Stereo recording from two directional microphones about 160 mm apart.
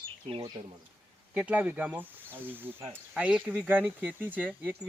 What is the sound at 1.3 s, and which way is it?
Speech, 5° right (ahead or behind).